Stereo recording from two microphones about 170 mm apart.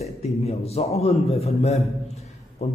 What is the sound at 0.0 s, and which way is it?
A man's voice, 40° left (ahead or behind).